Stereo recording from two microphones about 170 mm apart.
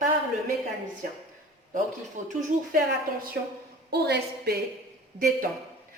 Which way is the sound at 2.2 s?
45° right (ahead or behind).